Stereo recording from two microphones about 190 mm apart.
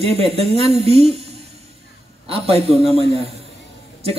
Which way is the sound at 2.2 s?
30° right (ahead or behind).